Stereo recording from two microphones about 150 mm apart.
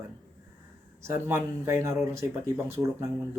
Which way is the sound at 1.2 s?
15° right (ahead or behind).